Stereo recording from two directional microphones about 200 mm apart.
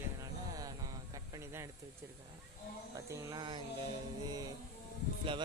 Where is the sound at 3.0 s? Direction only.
20° right (ahead or behind).